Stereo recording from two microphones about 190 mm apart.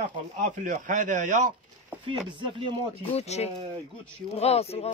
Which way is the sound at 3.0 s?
30° left (ahead or behind).